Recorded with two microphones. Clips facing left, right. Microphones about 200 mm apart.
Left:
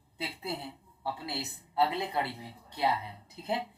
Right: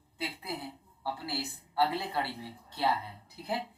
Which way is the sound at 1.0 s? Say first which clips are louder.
Even; 20° left (ahead or behind).